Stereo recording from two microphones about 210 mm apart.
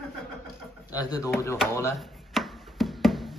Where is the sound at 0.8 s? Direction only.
20° left (ahead or behind).